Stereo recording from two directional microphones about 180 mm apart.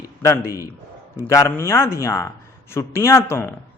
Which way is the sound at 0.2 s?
15° left (ahead or behind).